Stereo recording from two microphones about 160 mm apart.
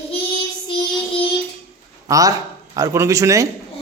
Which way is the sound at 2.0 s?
20° right (ahead or behind).